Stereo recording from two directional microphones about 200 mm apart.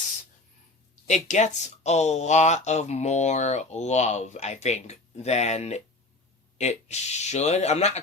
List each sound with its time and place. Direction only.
1.0 s speech: 35° left (ahead or behind)